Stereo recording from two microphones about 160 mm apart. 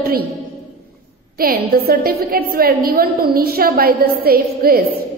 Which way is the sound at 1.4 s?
70° right (ahead or behind).